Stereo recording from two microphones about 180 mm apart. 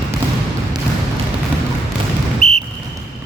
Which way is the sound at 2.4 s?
Centre (ahead or behind).